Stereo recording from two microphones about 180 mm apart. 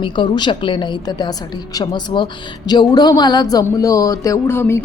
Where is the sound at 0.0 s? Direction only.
25° left (ahead or behind).